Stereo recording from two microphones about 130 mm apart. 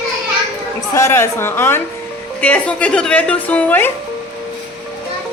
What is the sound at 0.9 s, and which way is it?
A woman's voice, 20° left (ahead or behind).